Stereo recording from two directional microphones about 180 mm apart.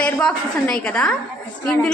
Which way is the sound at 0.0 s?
5° left (ahead or behind).